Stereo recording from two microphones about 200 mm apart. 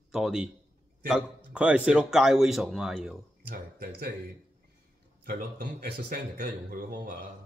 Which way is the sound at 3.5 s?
45° right (ahead or behind).